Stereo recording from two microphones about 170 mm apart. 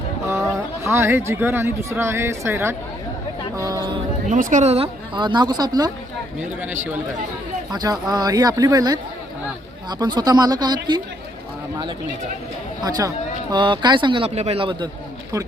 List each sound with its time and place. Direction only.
0.9 s speech: 15° right (ahead or behind)
4.3 s speech: 50° right (ahead or behind); by 5.9 s 25° right (ahead or behind)
7.7 s speech: 25° right (ahead or behind)
10.0 s speech: 25° right (ahead or behind)
12.8 s speech: 20° right (ahead or behind)